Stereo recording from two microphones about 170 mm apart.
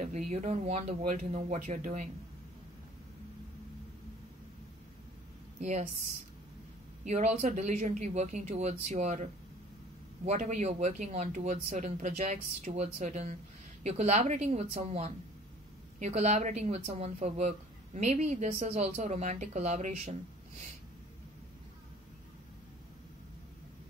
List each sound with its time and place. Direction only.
0.3 s speech: 40° right (ahead or behind)
5.6 s speech: 45° right (ahead or behind)
7.1 s speech: 45° right (ahead or behind)